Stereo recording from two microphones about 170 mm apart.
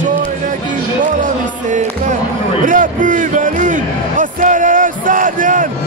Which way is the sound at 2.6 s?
50° right (ahead or behind).